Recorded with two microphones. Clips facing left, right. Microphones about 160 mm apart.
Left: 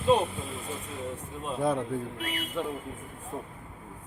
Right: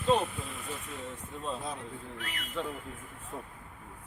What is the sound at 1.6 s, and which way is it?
Speech, 60° left (ahead or behind).